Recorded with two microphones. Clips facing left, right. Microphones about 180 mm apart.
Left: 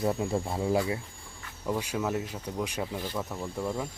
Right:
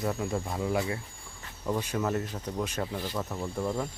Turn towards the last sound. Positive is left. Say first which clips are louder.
# right 1 dB
turn(degrees=0)  # may be behind; listen again after turning